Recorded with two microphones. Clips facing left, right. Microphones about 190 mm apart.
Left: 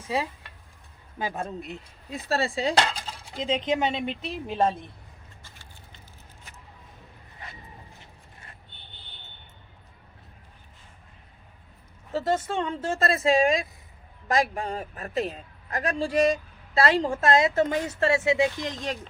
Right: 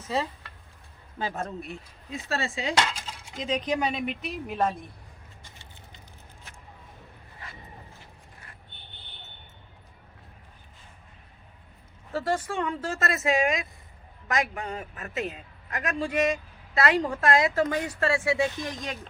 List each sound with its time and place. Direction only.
0.1 s a sound: 10° left (ahead or behind)
1.2 s speech: 15° left (ahead or behind)
2.1 s a woman's voice: 35° left (ahead or behind)
5.4 s vehicle: 20° right (ahead or behind)
7.9 s clip-clop: 25° left (ahead or behind)
12.1 s a woman's voice: 25° left (ahead or behind)